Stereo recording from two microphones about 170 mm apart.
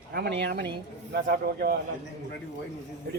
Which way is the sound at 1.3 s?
65° right (ahead or behind).